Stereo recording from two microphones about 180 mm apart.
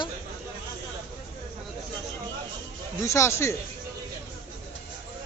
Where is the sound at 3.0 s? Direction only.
15° left (ahead or behind).